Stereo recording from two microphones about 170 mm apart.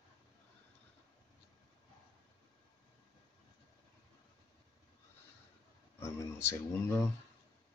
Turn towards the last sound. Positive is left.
turn(degrees=15)  # may be behind; listen again after turning